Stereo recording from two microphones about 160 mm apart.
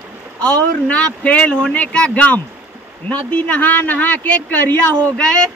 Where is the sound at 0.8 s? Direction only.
10° left (ahead or behind).